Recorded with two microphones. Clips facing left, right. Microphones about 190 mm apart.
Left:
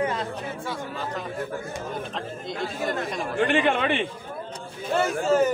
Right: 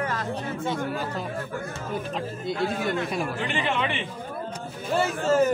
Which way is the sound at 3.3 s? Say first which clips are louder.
Left 5 dB; 55° left (ahead or behind).